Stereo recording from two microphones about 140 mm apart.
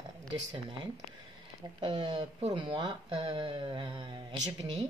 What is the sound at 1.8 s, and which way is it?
Speech, 35° right (ahead or behind).